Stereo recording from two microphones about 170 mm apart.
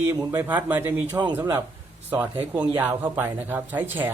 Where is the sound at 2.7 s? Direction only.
10° right (ahead or behind).